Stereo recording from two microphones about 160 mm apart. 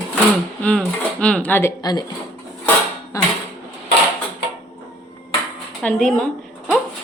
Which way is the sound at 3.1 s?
20° left (ahead or behind).